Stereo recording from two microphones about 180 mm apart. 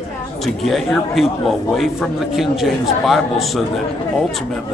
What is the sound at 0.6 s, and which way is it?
Speech, centre (ahead or behind).